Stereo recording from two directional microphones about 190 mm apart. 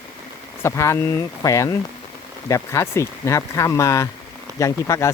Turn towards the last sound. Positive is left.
turn(degrees=15)  # may be behind; listen again after turning